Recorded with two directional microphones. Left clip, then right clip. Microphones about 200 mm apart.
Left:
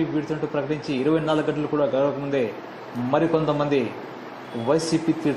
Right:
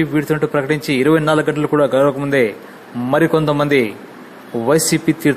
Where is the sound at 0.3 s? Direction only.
25° right (ahead or behind).